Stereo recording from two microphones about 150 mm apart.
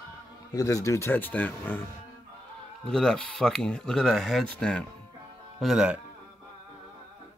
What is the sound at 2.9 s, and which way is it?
Speech, 5° left (ahead or behind).